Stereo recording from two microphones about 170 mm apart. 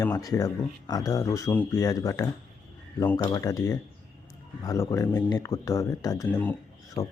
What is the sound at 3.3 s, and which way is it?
Speech, 20° left (ahead or behind).